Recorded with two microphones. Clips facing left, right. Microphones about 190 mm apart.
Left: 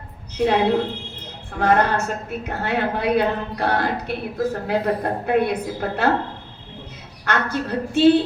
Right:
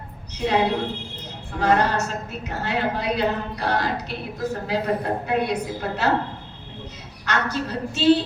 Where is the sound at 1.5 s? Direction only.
55° left (ahead or behind).